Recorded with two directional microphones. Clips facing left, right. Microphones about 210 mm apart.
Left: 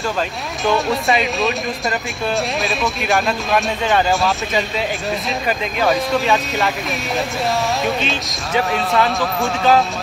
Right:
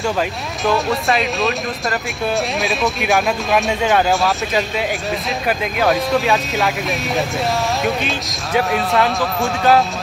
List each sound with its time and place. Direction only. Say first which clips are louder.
0.7 s speech: even; centre (ahead or behind)
7.8 s speech: even; centre (ahead or behind)